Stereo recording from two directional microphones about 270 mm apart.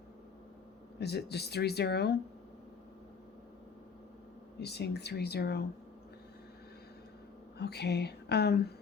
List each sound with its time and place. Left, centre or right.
0.9 s speech: left
4.6 s speech: left
7.6 s speech: left